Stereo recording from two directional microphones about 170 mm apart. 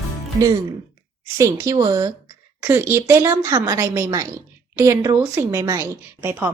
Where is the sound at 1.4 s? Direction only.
20° right (ahead or behind).